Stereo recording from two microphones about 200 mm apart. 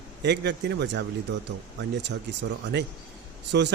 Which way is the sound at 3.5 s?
55° right (ahead or behind).